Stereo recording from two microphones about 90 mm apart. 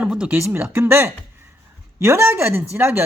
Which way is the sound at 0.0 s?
10° right (ahead or behind).